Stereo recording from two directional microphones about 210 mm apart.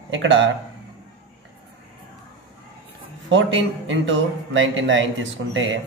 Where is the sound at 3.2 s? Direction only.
60° right (ahead or behind).